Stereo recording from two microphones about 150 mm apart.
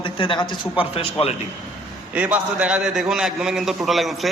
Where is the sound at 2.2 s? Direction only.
10° right (ahead or behind).